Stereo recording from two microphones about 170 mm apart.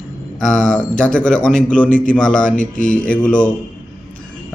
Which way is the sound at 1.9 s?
50° left (ahead or behind).